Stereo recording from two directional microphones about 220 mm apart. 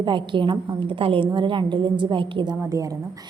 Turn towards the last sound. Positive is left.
turn(degrees=-15)  # may be behind; listen again after turning